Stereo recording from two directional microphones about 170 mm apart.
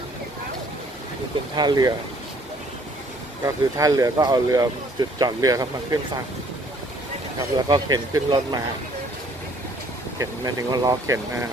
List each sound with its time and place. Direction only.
1.5 s speech: 25° right (ahead or behind)
3.4 s speech: 20° right (ahead or behind)
7.5 s speech: 25° right (ahead or behind)
10.1 s speech: 25° right (ahead or behind)